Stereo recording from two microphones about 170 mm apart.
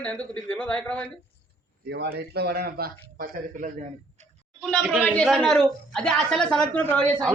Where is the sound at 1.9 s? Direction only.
70° right (ahead or behind).